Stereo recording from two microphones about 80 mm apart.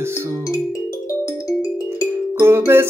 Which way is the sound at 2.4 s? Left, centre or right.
Right.